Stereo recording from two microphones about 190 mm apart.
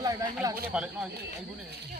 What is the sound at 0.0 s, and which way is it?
Speech, 20° right (ahead or behind).